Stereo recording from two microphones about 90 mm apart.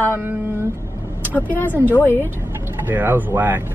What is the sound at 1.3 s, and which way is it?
Speech, 20° left (ahead or behind).